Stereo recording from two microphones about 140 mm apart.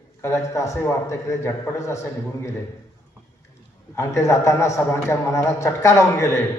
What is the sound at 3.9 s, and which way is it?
A man's voice, 20° left (ahead or behind).